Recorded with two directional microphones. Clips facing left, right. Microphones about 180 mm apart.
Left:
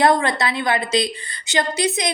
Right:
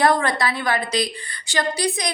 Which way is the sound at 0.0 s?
25° left (ahead or behind).